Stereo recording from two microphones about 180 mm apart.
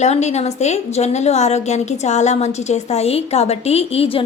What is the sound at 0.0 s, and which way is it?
A woman's voice, 40° left (ahead or behind).